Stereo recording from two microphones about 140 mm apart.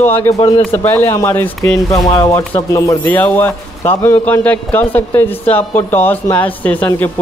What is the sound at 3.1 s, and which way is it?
A man's voice, 10° left (ahead or behind).